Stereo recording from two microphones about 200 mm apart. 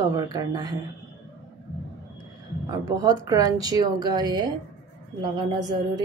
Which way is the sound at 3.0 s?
20° right (ahead or behind).